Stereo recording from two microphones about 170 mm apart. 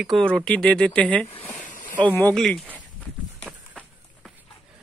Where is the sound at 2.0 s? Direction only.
10° left (ahead or behind).